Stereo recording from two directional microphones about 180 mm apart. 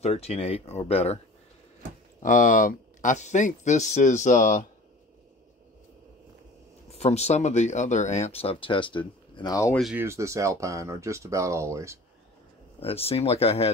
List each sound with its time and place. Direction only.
0.0 s speech: 35° left (ahead or behind)
2.2 s speech: 45° left (ahead or behind)
6.9 s speech: 35° left (ahead or behind); by 9.8 s 20° left (ahead or behind)
9.9 s speech: 15° right (ahead or behind)
12.8 s speech: 35° left (ahead or behind)